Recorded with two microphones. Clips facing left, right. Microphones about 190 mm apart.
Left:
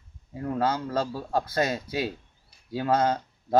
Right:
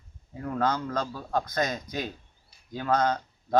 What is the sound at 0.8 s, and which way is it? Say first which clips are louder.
Speech: left 3 dB; 30° left (ahead or behind).